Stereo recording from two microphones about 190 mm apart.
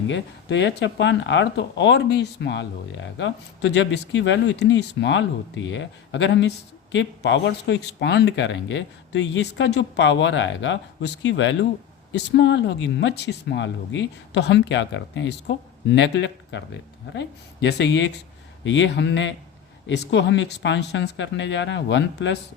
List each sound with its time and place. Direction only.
0.1 s speech: 70° left (ahead or behind)